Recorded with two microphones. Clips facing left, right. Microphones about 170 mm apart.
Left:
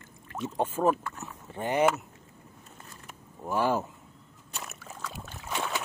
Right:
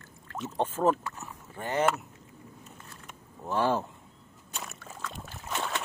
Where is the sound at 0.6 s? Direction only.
10° left (ahead or behind).